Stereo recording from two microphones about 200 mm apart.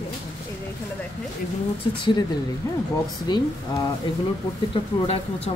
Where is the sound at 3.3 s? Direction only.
20° left (ahead or behind).